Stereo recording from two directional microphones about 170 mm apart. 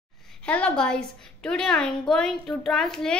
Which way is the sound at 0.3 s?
5° left (ahead or behind).